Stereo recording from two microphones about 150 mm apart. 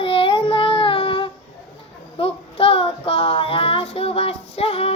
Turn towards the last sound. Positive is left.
turn(degrees=40)  # may be behind; listen again after turning